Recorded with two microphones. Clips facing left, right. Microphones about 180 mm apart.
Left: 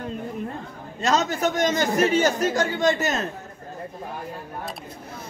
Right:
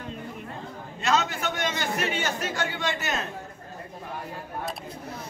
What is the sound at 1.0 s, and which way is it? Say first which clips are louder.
A man's voice: left 4 dB; 40° left (ahead or behind).